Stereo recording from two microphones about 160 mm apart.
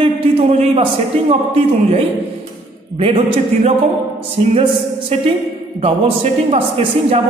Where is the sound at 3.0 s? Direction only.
35° right (ahead or behind).